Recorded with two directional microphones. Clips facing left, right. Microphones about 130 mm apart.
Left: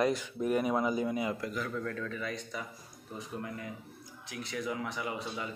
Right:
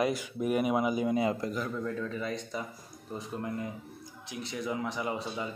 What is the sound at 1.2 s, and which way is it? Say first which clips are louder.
Speech: right 4 dB; 25° right (ahead or behind).